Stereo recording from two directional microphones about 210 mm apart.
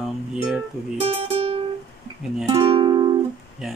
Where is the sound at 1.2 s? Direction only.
25° right (ahead or behind).